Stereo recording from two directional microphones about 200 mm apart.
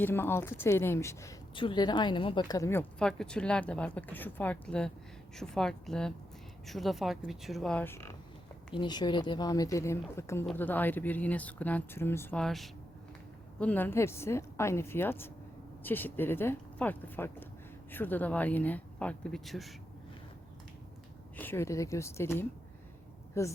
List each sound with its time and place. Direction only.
0.0 s a woman's voice: 10° left (ahead or behind)
21.3 s a woman's voice: 10° left (ahead or behind)